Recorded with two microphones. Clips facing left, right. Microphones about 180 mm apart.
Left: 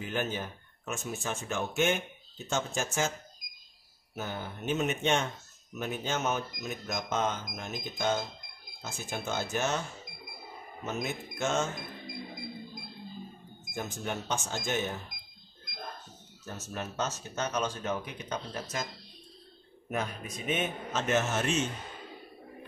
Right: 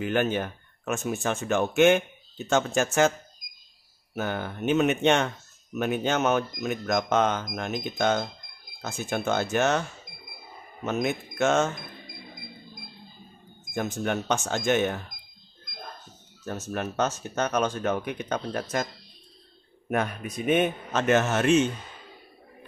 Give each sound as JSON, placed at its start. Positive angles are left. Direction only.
{"t": 0.0, "sound": "speech", "side_deg": -70}
{"t": 4.1, "sound": "speech", "side_deg": -70}
{"t": 10.9, "sound": "speech", "side_deg": -70}
{"t": 13.7, "sound": "speech", "side_deg": -70}
{"t": 16.7, "sound": "speech", "side_deg": -65}
{"t": 19.9, "sound": "speech", "side_deg": -60}